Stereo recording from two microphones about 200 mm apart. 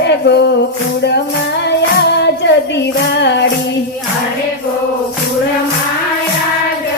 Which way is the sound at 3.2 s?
60° left (ahead or behind).